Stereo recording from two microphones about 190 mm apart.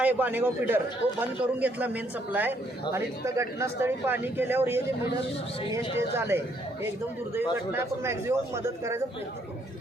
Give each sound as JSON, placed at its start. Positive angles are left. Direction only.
{"t": 0.0, "sound": "speech", "side_deg": -10}
{"t": 7.7, "sound": "speech", "side_deg": -15}